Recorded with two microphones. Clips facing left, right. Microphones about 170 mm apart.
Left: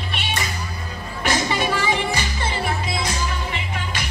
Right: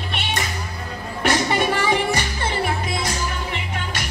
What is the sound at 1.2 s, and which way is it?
Music, 55° right (ahead or behind).